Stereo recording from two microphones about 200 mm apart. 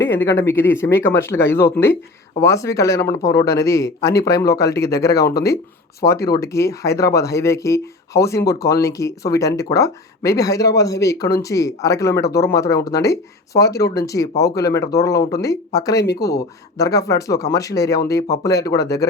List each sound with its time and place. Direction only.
0.2 s speech: 10° left (ahead or behind)
5.1 s speech: 50° left (ahead or behind)
6.0 s speech: 15° left (ahead or behind)
16.0 s speech: 55° left (ahead or behind)
16.7 s speech: 15° left (ahead or behind)